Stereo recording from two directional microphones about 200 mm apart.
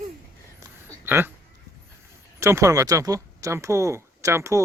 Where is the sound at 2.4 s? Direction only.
15° right (ahead or behind).